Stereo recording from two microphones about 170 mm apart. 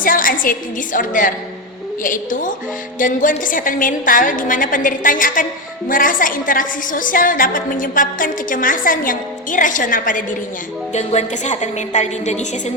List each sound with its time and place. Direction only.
0.0 s a woman's voice: 55° left (ahead or behind)